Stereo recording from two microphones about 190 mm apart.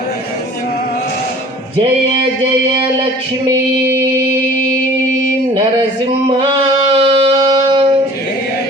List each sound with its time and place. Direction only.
1.8 s music: 30° right (ahead or behind)
3.4 s mantra: 15° right (ahead or behind)
6.9 s music: 30° right (ahead or behind)